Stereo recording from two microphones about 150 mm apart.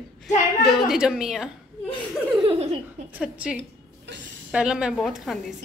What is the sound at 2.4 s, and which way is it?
Laughter, 40° right (ahead or behind).